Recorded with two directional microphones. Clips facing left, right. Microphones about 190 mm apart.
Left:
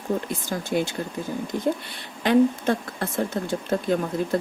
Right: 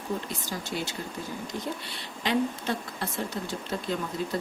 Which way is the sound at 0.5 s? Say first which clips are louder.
Left 9 dB; 50° left (ahead or behind).